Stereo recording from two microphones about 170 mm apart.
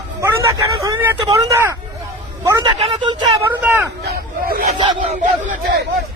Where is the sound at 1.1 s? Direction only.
25° right (ahead or behind).